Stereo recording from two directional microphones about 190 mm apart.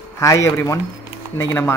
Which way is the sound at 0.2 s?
15° left (ahead or behind).